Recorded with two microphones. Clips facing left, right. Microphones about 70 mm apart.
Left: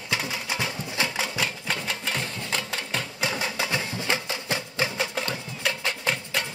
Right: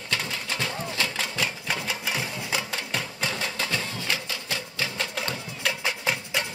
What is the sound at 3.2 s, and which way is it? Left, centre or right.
Music, centre.